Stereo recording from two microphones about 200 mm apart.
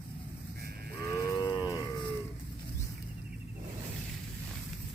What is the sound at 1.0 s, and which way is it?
Cattle, 15° left (ahead or behind).